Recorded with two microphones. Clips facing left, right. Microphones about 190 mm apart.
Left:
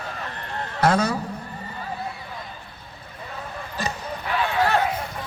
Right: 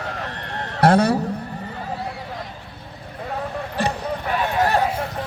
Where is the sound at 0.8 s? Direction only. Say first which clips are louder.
Right 5 dB; 60° right (ahead or behind).